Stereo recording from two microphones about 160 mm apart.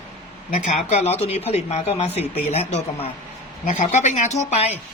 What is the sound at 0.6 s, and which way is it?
Speech, 45° left (ahead or behind).